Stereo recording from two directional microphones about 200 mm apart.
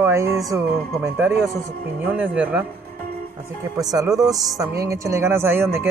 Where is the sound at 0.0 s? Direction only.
15° right (ahead or behind).